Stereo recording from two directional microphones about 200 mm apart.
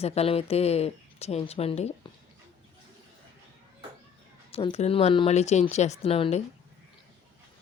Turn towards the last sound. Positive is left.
turn(degrees=30)  # may be behind; listen again after turning